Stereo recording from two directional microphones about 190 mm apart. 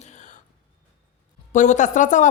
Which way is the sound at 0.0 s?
40° left (ahead or behind).